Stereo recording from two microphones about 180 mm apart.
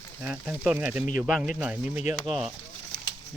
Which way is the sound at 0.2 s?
5° right (ahead or behind).